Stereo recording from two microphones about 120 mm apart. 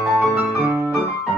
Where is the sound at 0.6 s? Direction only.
20° right (ahead or behind).